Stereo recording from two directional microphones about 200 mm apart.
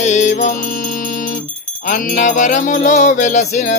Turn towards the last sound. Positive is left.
turn(degrees=35)  # may be behind; listen again after turning